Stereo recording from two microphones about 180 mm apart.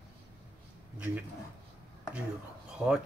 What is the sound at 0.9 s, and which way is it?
Speech, 10° right (ahead or behind).